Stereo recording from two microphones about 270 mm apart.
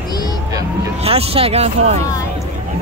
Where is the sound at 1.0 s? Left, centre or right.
Right.